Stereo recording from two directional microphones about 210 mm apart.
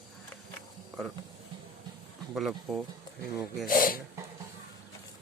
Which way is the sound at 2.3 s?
Centre (ahead or behind).